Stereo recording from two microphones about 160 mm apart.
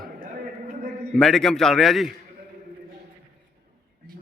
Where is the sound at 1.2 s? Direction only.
5° left (ahead or behind).